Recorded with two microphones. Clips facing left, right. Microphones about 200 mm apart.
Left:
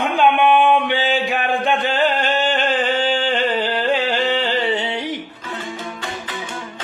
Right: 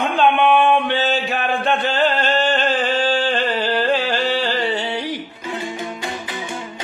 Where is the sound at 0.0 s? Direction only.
10° left (ahead or behind).